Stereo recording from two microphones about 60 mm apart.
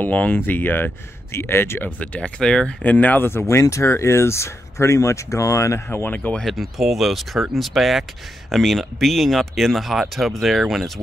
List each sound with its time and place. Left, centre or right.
0.0 s speech: left
2.0 s speech: centre
2.8 s speech: left
3.3 s speech: left
5.9 s speech: left
6.4 s speech: centre